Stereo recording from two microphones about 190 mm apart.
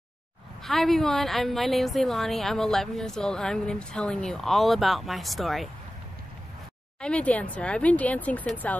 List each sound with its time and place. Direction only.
0.7 s a woman's voice: centre (ahead or behind)
7.0 s speech: 5° left (ahead or behind)